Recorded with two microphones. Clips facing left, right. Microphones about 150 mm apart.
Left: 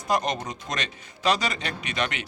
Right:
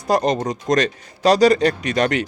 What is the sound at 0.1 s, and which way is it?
Speech, 35° right (ahead or behind).